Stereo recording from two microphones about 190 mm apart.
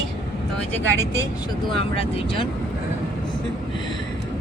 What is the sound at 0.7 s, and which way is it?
Speech, 15° left (ahead or behind).